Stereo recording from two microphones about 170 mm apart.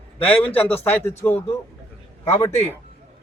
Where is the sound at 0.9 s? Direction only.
15° left (ahead or behind).